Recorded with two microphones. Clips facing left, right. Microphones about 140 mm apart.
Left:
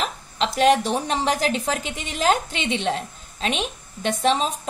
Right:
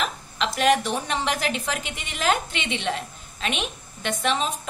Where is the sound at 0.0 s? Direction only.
35° left (ahead or behind).